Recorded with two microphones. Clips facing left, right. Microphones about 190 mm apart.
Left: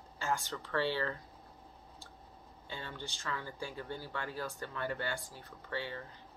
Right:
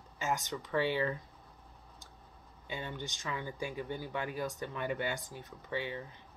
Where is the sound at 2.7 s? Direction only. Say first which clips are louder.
Right 4 dB; 15° right (ahead or behind).